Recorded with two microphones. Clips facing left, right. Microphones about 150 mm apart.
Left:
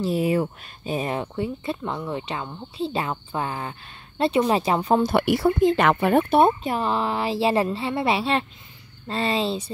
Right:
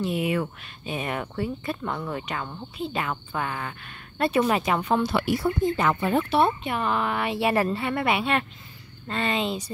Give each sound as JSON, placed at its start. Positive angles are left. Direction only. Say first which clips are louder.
{"t": 0.0, "sound": "a woman's voice", "louder": "left 4 dB", "side_deg": 35}
{"t": 5.0, "sound": "speech", "louder": "left 4 dB", "side_deg": 60}
{"t": 6.0, "sound": "a woman's voice", "louder": "left 4 dB", "side_deg": 50}